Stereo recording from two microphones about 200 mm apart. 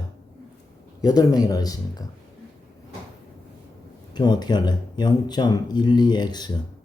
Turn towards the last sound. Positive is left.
turn(degrees=20)  # may be behind; listen again after turning